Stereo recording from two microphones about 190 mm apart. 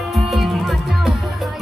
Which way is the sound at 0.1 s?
Centre (ahead or behind).